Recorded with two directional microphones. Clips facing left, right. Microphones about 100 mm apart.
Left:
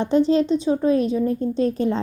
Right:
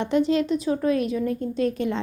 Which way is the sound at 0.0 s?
30° left (ahead or behind).